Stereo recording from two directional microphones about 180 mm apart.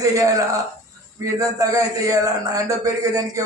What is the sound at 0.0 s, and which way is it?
A man's voice, 20° right (ahead or behind).